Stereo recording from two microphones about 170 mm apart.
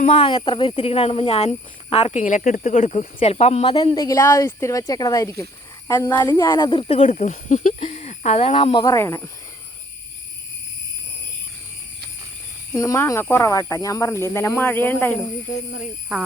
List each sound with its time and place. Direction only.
0.0 s speech: 30° left (ahead or behind); by 9.3 s 15° left (ahead or behind)
12.7 s speech: 20° left (ahead or behind)